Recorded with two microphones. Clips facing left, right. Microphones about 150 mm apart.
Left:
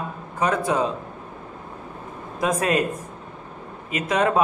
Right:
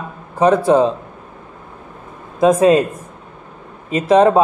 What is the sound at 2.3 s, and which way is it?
Speech, 25° right (ahead or behind).